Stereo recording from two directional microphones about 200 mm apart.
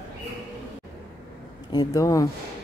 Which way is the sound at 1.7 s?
20° left (ahead or behind).